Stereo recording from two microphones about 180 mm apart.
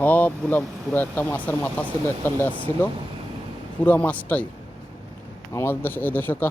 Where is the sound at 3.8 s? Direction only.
10° left (ahead or behind).